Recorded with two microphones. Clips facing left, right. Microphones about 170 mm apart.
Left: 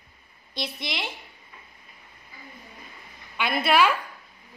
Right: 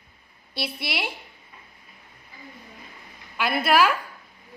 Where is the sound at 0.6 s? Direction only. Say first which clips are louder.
Right 2 dB; 10° right (ahead or behind).